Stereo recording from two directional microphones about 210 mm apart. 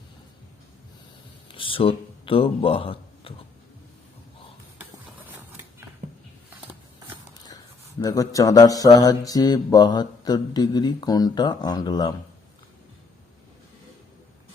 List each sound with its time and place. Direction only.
1.5 s speech: 25° left (ahead or behind)
6.0 s a sound: 35° right (ahead or behind)
7.9 s mantra: 15° left (ahead or behind)